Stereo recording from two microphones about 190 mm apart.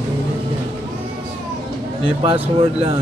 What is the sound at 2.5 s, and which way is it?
Speech, 30° right (ahead or behind).